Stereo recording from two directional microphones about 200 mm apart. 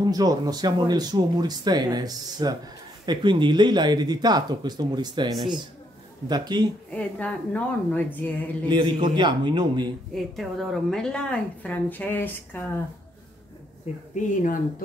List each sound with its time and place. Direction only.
0.0 s speech: 20° right (ahead or behind)
6.9 s speech: 5° left (ahead or behind)
8.6 s speech: 25° right (ahead or behind)
10.1 s a woman's voice: centre (ahead or behind)
14.1 s speech: 40° left (ahead or behind)